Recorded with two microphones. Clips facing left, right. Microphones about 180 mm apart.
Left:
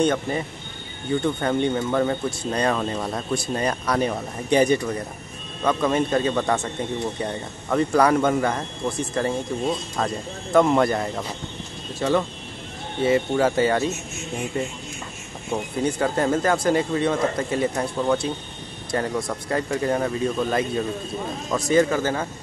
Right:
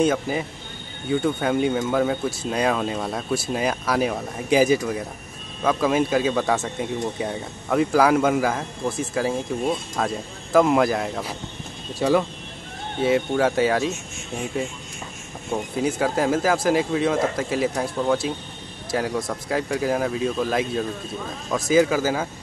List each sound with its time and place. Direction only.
0.0 s speech: 5° right (ahead or behind)
15.5 s speech: 5° right (ahead or behind)